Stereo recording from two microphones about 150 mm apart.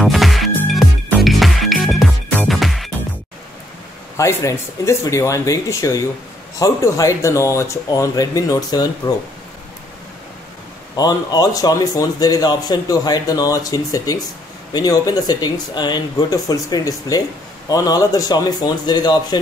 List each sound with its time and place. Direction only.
0.0 s music: centre (ahead or behind)
4.2 s a man's voice: 20° left (ahead or behind)
11.0 s a man's voice: 25° left (ahead or behind)